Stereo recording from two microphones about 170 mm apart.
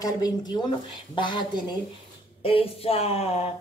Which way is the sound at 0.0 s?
25° left (ahead or behind).